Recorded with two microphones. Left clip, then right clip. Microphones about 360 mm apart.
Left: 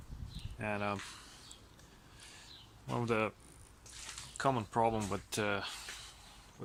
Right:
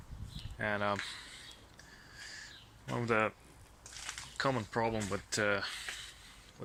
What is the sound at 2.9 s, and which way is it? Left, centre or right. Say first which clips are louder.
Speech: right 2 dB; centre.